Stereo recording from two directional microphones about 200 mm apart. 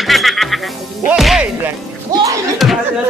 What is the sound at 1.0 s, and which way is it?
Whip, centre (ahead or behind).